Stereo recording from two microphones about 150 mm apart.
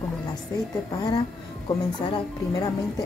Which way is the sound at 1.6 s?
30° left (ahead or behind).